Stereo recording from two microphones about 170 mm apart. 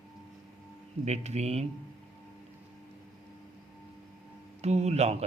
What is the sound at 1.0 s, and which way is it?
Speech, 40° right (ahead or behind).